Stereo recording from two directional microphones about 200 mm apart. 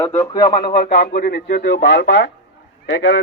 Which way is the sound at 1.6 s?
55° left (ahead or behind).